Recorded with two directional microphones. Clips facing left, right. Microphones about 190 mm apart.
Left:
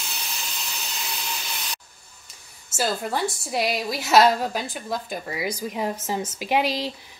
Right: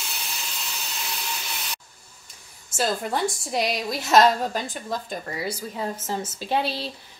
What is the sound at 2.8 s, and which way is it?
A woman's voice, centre (ahead or behind).